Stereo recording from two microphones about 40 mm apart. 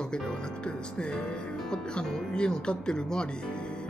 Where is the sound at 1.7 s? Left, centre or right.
Left.